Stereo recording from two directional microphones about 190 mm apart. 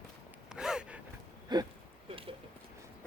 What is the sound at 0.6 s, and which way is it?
Gasp, 5° right (ahead or behind).